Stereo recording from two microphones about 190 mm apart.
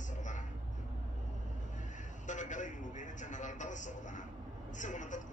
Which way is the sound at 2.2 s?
40° left (ahead or behind).